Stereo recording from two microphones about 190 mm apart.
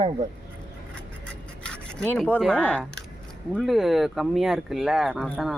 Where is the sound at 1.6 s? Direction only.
5° left (ahead or behind).